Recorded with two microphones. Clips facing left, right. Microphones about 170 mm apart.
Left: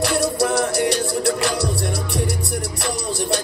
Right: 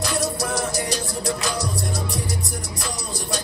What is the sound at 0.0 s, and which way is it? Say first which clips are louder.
Music: left 6 dB; 65° left (ahead or behind).